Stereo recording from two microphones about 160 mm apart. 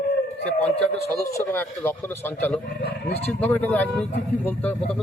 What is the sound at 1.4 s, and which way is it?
Speech, 15° left (ahead or behind).